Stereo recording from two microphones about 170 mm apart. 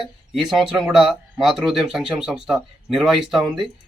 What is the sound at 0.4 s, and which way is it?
A man's voice, centre (ahead or behind).